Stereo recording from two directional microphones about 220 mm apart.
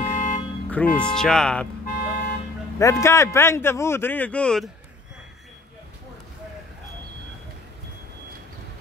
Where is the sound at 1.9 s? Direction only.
40° left (ahead or behind).